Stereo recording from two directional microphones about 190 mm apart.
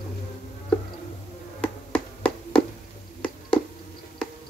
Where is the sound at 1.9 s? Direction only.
5° left (ahead or behind).